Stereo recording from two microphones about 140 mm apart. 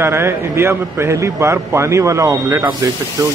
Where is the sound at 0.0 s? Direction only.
15° right (ahead or behind).